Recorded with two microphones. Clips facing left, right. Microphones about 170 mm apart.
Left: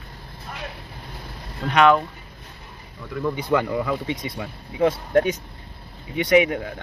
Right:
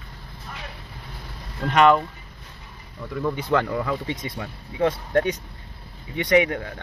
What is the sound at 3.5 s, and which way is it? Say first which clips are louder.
Speech: left 1 dB; 10° left (ahead or behind).